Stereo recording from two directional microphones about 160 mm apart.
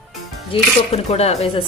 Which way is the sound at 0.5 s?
40° left (ahead or behind).